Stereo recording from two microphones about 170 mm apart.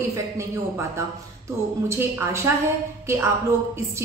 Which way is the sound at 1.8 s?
15° right (ahead or behind).